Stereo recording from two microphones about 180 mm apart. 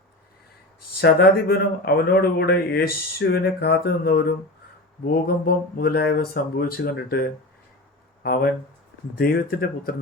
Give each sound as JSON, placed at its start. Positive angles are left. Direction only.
{"t": 1.0, "sound": "speech", "side_deg": 60}